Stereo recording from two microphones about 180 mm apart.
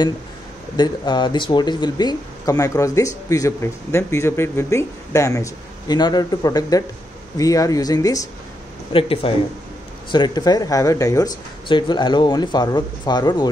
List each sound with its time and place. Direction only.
0.7 s speech: 25° left (ahead or behind)
8.9 s speech: 30° left (ahead or behind)